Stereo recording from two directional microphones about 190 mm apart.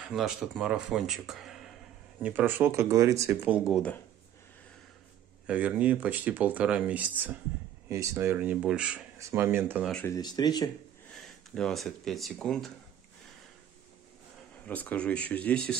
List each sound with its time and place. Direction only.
0.1 s speech: centre (ahead or behind)
5.5 s speech: 5° right (ahead or behind)
10.0 s speech: 20° left (ahead or behind)
11.1 s speech: centre (ahead or behind)
14.7 s speech: 10° left (ahead or behind)